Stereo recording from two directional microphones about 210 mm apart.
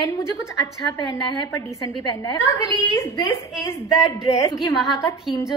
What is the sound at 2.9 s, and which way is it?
Speech, 15° left (ahead or behind).